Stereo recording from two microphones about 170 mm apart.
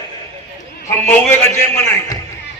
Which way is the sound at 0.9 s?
10° left (ahead or behind).